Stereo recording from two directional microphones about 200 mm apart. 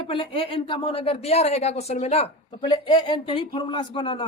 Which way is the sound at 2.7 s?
25° left (ahead or behind).